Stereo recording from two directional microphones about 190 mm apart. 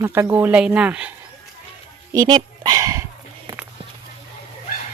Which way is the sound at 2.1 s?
20° right (ahead or behind).